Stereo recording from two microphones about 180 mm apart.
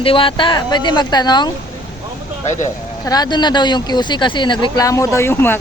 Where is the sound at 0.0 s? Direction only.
30° left (ahead or behind).